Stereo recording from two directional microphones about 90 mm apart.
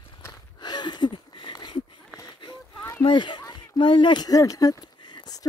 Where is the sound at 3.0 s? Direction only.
60° left (ahead or behind).